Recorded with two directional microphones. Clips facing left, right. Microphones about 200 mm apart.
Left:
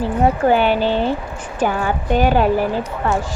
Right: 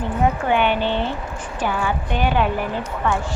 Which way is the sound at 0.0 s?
35° left (ahead or behind).